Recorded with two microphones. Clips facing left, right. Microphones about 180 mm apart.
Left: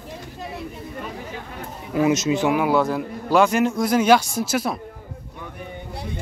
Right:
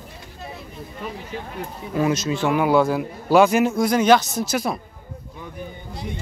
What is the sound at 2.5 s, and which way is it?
A man's voice, centre (ahead or behind).